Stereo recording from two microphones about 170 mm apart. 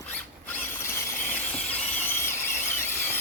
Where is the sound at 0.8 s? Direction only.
10° left (ahead or behind).